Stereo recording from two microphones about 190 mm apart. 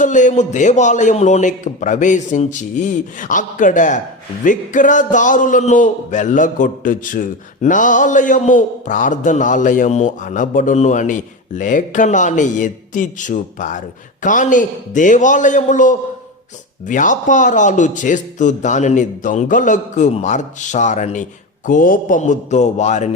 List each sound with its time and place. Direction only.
0.0 s speech: 40° left (ahead or behind)